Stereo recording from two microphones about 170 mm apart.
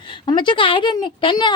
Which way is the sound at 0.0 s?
30° left (ahead or behind).